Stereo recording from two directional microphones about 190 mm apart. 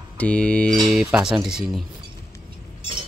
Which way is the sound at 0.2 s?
5° left (ahead or behind).